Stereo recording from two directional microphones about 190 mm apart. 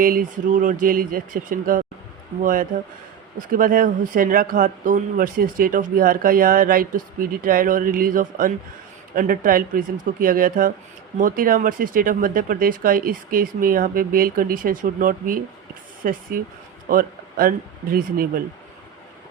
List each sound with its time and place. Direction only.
0.0 s speech: 45° right (ahead or behind)